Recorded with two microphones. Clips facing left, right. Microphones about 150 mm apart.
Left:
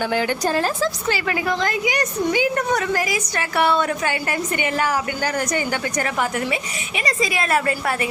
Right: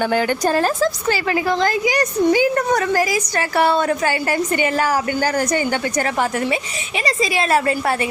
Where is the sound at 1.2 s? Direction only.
30° right (ahead or behind).